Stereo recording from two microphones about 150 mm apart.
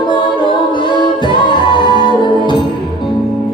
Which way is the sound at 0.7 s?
30° left (ahead or behind).